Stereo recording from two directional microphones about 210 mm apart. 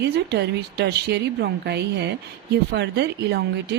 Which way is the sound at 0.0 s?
55° right (ahead or behind).